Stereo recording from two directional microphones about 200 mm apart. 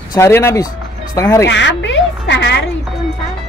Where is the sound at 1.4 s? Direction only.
60° left (ahead or behind).